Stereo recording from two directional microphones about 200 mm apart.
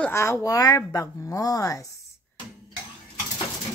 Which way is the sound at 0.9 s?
15° left (ahead or behind).